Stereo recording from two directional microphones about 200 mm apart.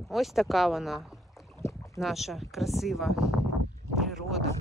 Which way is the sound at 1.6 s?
15° left (ahead or behind).